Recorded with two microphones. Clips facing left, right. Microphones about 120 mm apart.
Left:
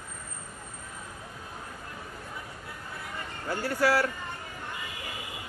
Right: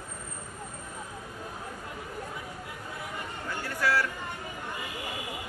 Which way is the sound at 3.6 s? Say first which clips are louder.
Left 3 dB; 30° left (ahead or behind).